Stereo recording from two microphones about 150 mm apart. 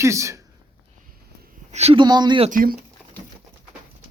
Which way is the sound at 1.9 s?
30° right (ahead or behind).